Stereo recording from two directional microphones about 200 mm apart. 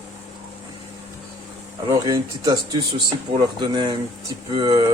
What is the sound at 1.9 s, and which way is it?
A man's voice, 15° right (ahead or behind).